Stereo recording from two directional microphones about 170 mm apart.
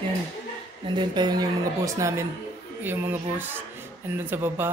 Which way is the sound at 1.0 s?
25° right (ahead or behind).